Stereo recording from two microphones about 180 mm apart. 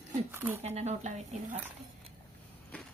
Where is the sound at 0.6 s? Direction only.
35° right (ahead or behind).